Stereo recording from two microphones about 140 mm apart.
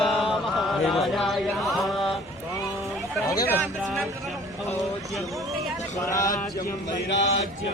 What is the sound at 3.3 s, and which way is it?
Speech, 20° left (ahead or behind).